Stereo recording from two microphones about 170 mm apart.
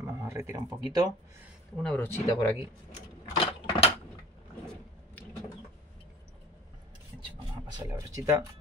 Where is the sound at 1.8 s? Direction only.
10° left (ahead or behind).